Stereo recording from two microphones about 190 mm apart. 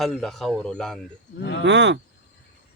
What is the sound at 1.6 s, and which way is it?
Speech, 70° right (ahead or behind).